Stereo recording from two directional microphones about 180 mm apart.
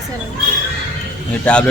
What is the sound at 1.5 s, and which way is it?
Speech, 5° left (ahead or behind).